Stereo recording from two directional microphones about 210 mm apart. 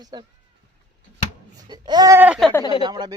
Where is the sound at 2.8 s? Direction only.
20° right (ahead or behind).